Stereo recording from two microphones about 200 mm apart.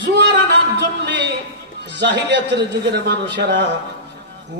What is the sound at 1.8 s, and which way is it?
Speech, 60° right (ahead or behind).